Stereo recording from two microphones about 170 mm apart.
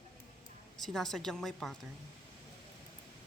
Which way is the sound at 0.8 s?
Centre (ahead or behind).